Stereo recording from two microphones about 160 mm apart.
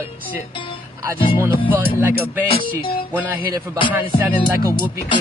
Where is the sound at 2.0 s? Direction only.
10° right (ahead or behind).